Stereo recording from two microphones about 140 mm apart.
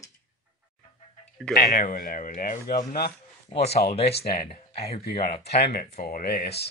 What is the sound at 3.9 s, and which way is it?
Speech, 45° left (ahead or behind).